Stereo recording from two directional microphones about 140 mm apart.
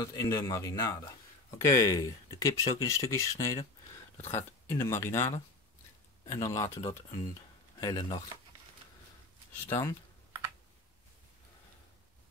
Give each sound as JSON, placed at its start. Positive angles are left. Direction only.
{"t": 0.0, "sound": "speech", "side_deg": 25}
{"t": 9.7, "sound": "speech", "side_deg": 15}